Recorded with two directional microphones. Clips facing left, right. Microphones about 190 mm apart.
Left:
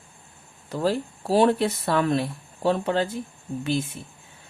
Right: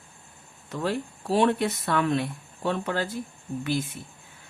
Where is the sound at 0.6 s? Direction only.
35° left (ahead or behind).